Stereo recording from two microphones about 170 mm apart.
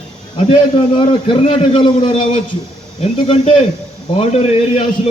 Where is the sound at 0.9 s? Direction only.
30° left (ahead or behind).